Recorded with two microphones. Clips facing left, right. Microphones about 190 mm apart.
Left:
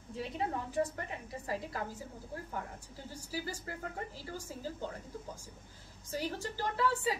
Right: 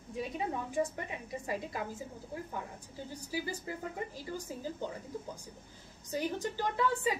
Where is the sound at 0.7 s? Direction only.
15° right (ahead or behind).